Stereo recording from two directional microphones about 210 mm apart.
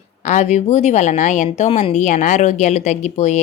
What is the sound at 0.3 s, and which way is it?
A woman's voice, 35° left (ahead or behind).